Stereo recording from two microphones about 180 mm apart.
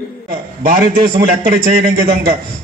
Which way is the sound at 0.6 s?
50° right (ahead or behind).